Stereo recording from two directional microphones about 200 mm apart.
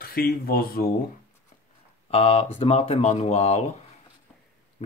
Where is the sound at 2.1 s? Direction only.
30° left (ahead or behind).